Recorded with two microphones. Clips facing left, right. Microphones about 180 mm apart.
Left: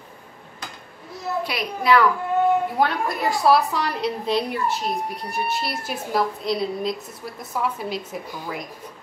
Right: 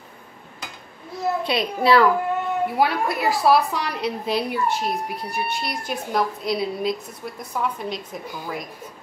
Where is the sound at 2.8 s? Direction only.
5° right (ahead or behind).